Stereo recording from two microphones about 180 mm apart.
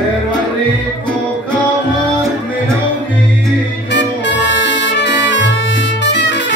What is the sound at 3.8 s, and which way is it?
Music, 80° left.